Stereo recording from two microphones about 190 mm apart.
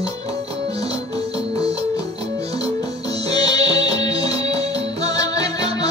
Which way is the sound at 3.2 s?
20° left (ahead or behind).